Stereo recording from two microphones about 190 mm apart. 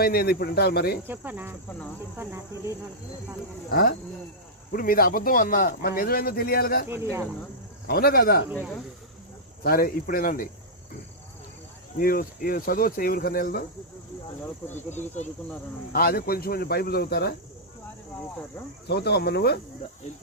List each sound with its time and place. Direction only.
0.0 s speech: 55° left (ahead or behind)
1.0 s speech: 10° right (ahead or behind)
3.7 s speech: 50° left (ahead or behind)
6.8 s speech: 15° right (ahead or behind)
7.9 s speech: 55° left (ahead or behind)
9.6 s speech: 50° left (ahead or behind)
11.9 s speech: 50° left (ahead or behind)
15.9 s speech: 50° left (ahead or behind)
18.9 s speech: 60° left (ahead or behind)